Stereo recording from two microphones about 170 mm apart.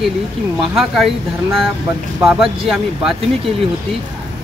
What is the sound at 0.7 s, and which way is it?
Speech, centre (ahead or behind).